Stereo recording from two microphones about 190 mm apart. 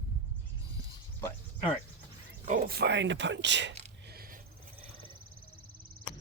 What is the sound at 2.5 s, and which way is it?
Speech, 55° right (ahead or behind).